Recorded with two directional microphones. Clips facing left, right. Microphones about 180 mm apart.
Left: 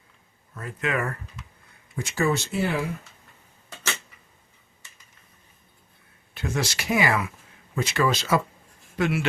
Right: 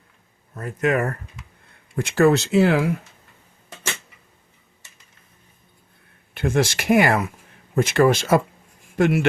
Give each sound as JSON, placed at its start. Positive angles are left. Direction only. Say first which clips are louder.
{"t": 0.5, "sound": "speech", "louder": "right 7 dB", "side_deg": -45}
{"t": 2.0, "sound": "speech", "louder": "right 8 dB", "side_deg": -65}
{"t": 6.3, "sound": "speech", "louder": "right 8 dB", "side_deg": -55}